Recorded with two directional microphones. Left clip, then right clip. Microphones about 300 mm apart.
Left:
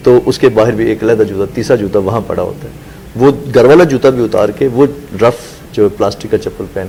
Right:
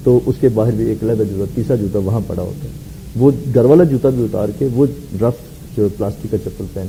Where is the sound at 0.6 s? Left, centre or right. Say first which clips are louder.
Left 7 dB; centre.